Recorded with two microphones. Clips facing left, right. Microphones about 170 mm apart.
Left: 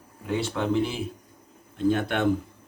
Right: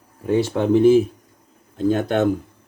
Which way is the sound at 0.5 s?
45° right (ahead or behind).